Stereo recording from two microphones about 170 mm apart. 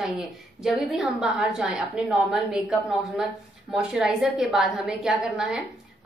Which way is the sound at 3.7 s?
5° right (ahead or behind).